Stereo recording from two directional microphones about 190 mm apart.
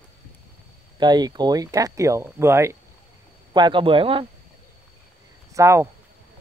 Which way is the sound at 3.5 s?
25° right (ahead or behind).